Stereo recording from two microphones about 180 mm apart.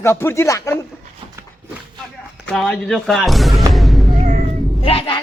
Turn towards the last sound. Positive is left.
turn(degrees=30)  # may be behind; listen again after turning